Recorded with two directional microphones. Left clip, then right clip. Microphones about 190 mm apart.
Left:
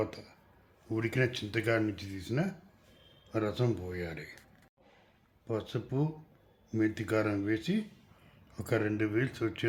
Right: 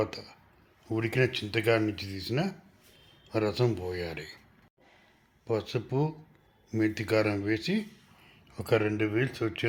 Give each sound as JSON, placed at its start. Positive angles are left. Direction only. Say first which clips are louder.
{"t": 0.0, "sound": "speech", "louder": "right 4 dB", "side_deg": -15}
{"t": 5.5, "sound": "speech", "louder": "right 5 dB", "side_deg": -15}